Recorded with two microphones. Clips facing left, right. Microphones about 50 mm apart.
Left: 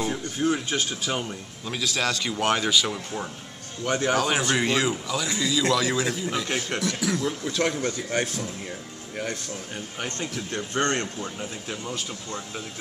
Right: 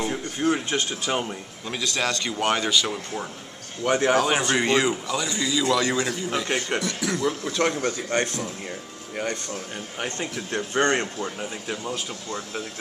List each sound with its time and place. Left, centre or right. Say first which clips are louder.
0.1 s a man's voice: right 1 dB; centre
9.9 s speech: right 2 dB; centre